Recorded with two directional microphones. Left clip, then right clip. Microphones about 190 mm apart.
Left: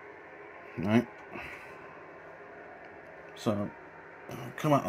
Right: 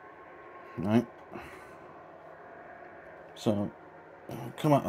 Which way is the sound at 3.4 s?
25° right (ahead or behind).